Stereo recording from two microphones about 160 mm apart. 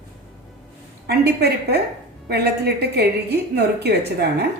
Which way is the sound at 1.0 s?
85° right.